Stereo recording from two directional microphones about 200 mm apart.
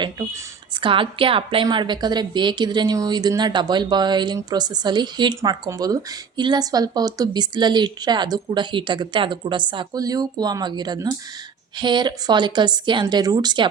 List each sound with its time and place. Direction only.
0.8 s a woman's voice: 25° right (ahead or behind)